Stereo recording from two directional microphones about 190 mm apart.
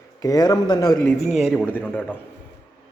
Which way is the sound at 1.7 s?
10° left (ahead or behind).